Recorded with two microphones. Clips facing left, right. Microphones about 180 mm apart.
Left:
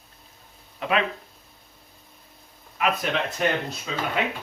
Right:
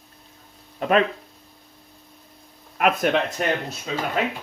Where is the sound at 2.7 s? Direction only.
50° right (ahead or behind).